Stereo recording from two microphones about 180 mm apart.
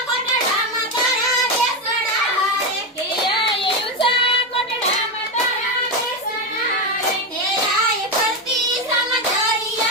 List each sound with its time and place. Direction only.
3.2 s child singing: 30° left (ahead or behind)